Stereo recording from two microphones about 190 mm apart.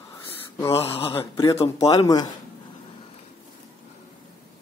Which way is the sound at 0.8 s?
30° left (ahead or behind).